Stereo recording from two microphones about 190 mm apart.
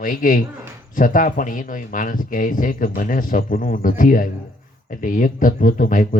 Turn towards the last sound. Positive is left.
turn(degrees=45)  # may be behind; listen again after turning